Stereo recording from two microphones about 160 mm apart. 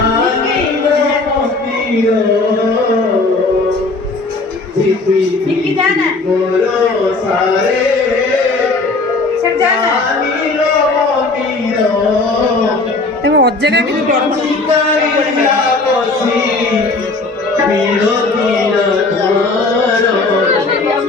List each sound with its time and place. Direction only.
13.2 s a woman's voice: 90° right